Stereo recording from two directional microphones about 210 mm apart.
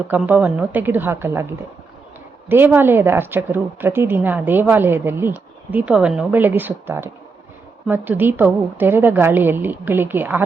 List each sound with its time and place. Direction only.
0.1 s a woman's voice: 5° right (ahead or behind)